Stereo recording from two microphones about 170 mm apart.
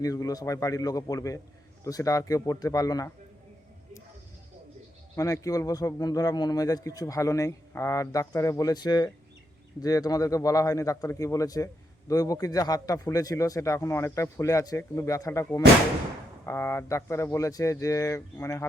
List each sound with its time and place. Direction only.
0.0 s a man's voice: 20° left (ahead or behind)
5.1 s a man's voice: 20° left (ahead or behind)